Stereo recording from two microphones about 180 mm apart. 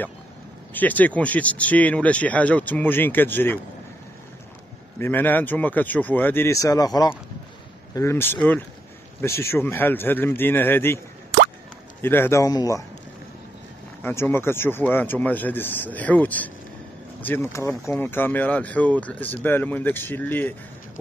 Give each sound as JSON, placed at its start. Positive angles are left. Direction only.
{"t": 0.7, "sound": "speech", "side_deg": 10}
{"t": 4.9, "sound": "speech", "side_deg": 10}
{"t": 12.0, "sound": "speech", "side_deg": 10}
{"t": 14.0, "sound": "speech", "side_deg": 10}